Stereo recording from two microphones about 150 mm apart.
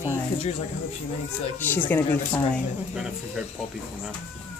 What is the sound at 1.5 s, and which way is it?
Speech, 10° left (ahead or behind).